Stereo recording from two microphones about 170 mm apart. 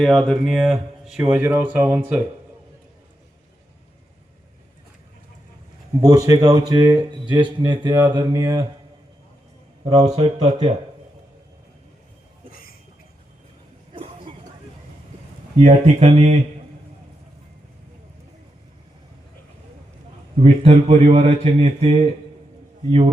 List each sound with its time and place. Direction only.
0.0 s speech: centre (ahead or behind)
6.2 s speech: 25° right (ahead or behind)
9.8 s a man's voice: 40° right (ahead or behind)
12.5 s a sound: 60° left (ahead or behind)
13.9 s a sound: 30° right (ahead or behind)
15.5 s a man's voice: 40° right (ahead or behind)
20.3 s a man's voice: 40° right (ahead or behind)